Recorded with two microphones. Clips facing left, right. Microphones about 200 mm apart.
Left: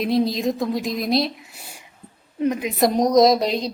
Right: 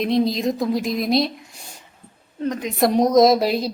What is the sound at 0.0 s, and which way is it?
A woman's voice, centre (ahead or behind).